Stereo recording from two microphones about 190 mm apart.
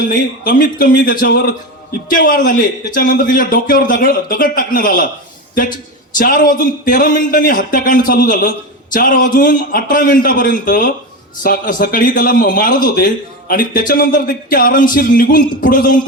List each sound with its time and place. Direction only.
0.0 s speech: 50° left (ahead or behind)
6.1 s speech: 50° left (ahead or behind)